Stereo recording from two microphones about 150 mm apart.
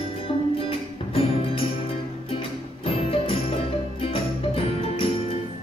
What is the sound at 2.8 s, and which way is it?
Music, 40° left (ahead or behind).